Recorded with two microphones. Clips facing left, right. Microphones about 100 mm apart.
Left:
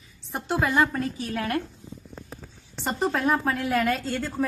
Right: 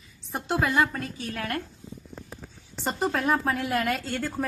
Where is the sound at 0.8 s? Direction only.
25° left (ahead or behind).